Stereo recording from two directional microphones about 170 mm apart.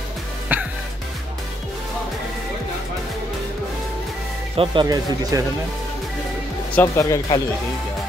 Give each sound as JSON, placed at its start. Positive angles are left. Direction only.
{"t": 0.5, "sound": "music", "side_deg": -10}
{"t": 4.6, "sound": "speech", "side_deg": -25}
{"t": 6.7, "sound": "speech", "side_deg": 15}